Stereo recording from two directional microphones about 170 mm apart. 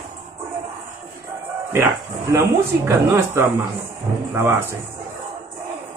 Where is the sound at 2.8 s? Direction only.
15° right (ahead or behind).